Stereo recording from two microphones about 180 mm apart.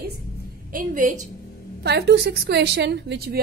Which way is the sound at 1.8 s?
65° right (ahead or behind).